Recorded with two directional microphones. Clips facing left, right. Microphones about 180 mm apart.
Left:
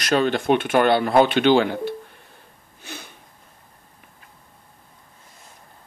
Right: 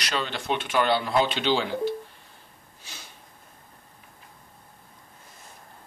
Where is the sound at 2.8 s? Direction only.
55° left (ahead or behind).